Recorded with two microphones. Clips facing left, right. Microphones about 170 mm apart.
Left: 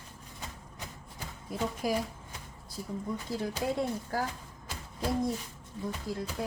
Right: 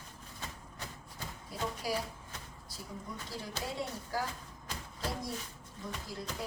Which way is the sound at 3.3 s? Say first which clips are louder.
Left 10 dB; 55° left (ahead or behind).